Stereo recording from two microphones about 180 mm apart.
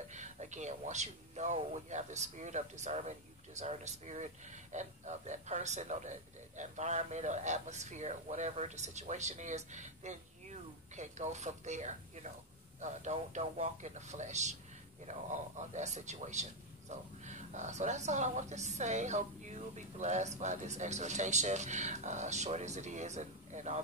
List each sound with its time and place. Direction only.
0.1 s a man's voice: 40° right (ahead or behind)